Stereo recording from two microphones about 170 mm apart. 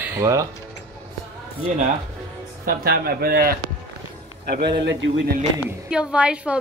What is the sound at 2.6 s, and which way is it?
Speech, 60° right (ahead or behind).